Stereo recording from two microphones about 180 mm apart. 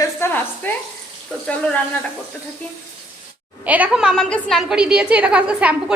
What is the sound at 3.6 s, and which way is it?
A woman's voice, 10° right (ahead or behind).